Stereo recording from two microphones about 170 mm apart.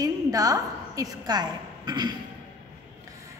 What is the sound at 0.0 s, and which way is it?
A woman's voice, 20° right (ahead or behind).